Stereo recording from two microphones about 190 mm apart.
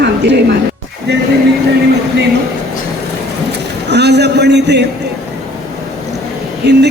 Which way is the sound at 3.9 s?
60° right (ahead or behind).